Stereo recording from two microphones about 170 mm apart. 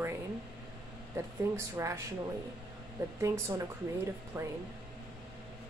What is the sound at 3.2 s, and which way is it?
Speech, 15° right (ahead or behind).